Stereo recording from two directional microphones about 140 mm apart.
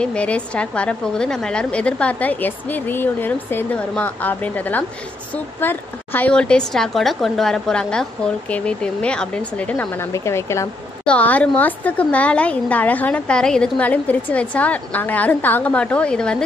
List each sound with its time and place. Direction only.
0.0 s a woman's voice: 10° left (ahead or behind)
11.1 s a woman's voice: 10° left (ahead or behind)